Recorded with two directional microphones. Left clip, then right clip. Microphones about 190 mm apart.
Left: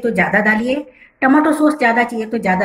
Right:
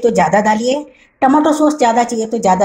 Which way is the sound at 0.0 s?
45° right (ahead or behind).